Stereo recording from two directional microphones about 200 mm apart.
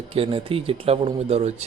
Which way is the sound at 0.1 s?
25° right (ahead or behind).